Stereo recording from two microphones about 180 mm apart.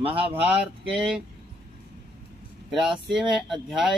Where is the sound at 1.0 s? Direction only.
5° right (ahead or behind).